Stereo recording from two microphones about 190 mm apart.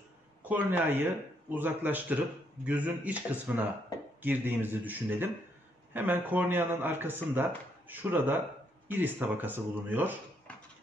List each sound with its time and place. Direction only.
0.7 s a man's voice: 10° right (ahead or behind)